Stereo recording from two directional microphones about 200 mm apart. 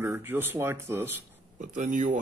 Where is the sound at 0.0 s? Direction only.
10° right (ahead or behind).